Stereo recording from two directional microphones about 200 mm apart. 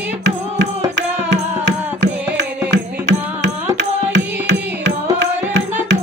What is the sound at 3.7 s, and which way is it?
Music, 60° right (ahead or behind).